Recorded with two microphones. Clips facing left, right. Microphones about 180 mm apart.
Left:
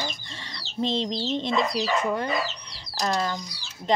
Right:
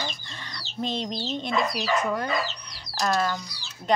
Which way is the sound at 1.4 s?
25° left (ahead or behind).